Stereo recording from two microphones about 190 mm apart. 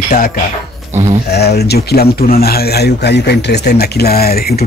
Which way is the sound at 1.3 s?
60° left (ahead or behind).